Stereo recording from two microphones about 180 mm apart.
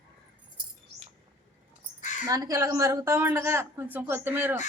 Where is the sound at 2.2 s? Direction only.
20° right (ahead or behind).